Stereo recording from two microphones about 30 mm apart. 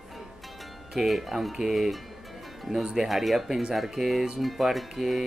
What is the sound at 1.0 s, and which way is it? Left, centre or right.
Speech, centre.